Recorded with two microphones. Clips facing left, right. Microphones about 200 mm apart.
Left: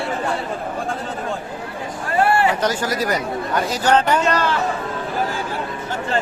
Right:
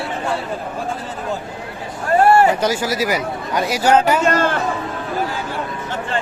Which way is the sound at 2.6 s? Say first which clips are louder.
Right 2 dB; 10° right (ahead or behind).